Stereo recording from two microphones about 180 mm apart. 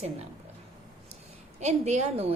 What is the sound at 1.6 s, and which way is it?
Speech, 40° right (ahead or behind).